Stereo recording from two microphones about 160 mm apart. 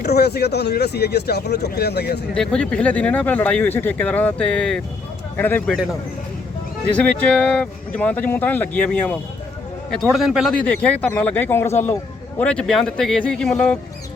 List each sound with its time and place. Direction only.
0.0 s speech: 90° left
2.3 s speech: 5° left (ahead or behind)
5.7 s speech: centre (ahead or behind)
10.7 s speech: 10° left (ahead or behind)